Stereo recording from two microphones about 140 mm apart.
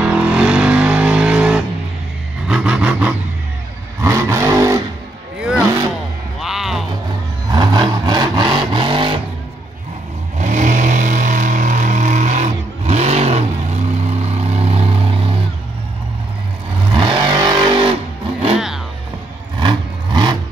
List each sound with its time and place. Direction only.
0.0 s vehicle: 10° right (ahead or behind)
4.0 s vehicle: 20° right (ahead or behind)
5.4 s vehicle: 5° right (ahead or behind)
6.4 s music: 5° right (ahead or behind)
7.5 s vehicle: 30° right (ahead or behind)
10.3 s vehicle: 60° right (ahead or behind); by 15.3 s 40° right (ahead or behind)
16.9 s vehicle: 35° right (ahead or behind)
19.6 s vehicle: 35° right (ahead or behind)